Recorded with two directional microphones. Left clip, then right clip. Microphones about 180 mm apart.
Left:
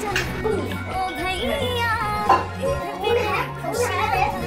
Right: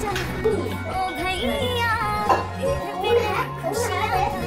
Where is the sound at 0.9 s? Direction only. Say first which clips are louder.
Even; centre (ahead or behind).